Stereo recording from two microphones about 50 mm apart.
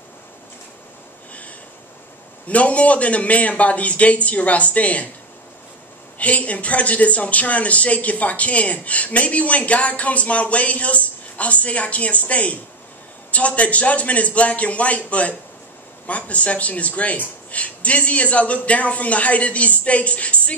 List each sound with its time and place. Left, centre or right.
2.4 s speech: left
6.1 s speech: left